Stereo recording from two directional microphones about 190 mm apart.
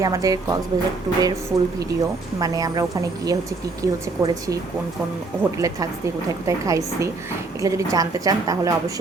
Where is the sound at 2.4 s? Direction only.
20° right (ahead or behind).